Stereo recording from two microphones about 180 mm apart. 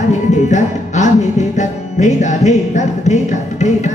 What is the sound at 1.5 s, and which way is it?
Music, 40° left (ahead or behind).